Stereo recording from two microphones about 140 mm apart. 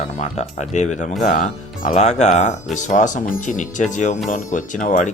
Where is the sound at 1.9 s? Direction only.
55° left (ahead or behind).